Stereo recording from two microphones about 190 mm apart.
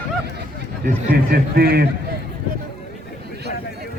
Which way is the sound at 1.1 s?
55° right (ahead or behind).